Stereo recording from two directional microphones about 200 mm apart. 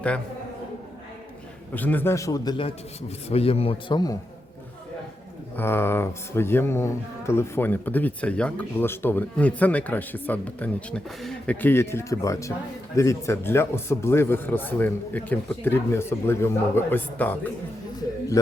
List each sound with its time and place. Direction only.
1.7 s a man's voice: 10° left (ahead or behind)
5.5 s speech: 10° left (ahead or behind)